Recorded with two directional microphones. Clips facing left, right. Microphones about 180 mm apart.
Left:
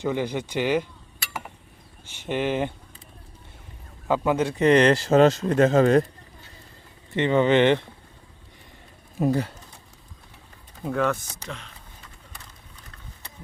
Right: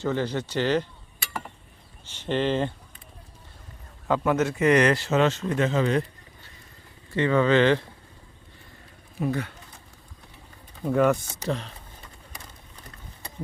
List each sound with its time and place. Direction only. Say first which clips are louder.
0.0 s speech: left 1 dB; 15° left (ahead or behind)
2.1 s speech: right 1 dB; 10° left (ahead or behind)
4.1 s speech: left 1 dB; 15° left (ahead or behind)
4.4 s speech: left 3 dB; 30° left (ahead or behind)
7.1 s speech: left 1 dB; 20° left (ahead or behind)
9.1 s speech: left 5 dB; 35° left (ahead or behind)
10.8 s speech: right 3 dB; 5° right (ahead or behind)
11.4 s speech: right 10 dB; 35° right (ahead or behind)